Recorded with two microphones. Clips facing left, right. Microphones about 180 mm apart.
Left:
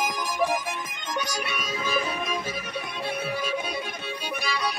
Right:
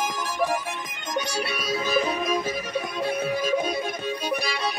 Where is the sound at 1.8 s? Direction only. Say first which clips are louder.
Right 4 dB; 40° right (ahead or behind).